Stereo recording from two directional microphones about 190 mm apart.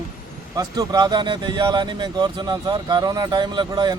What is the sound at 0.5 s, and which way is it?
Speech, 20° right (ahead or behind).